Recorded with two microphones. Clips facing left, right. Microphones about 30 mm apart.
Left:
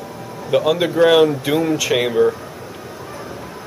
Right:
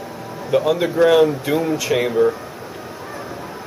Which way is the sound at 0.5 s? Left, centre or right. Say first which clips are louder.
Left 1 dB; left.